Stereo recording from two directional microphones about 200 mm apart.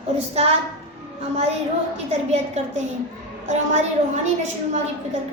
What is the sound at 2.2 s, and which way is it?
A woman's voice, 35° right (ahead or behind).